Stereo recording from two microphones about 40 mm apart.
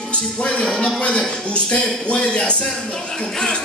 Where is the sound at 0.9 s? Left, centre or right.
Left.